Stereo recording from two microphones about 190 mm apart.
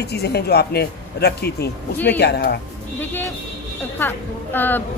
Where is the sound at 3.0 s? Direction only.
10° left (ahead or behind).